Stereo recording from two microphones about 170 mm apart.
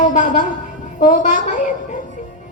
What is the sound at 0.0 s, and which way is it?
A woman's voice, 45° left (ahead or behind).